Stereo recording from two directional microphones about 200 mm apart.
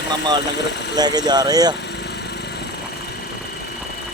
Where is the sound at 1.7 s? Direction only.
55° left (ahead or behind).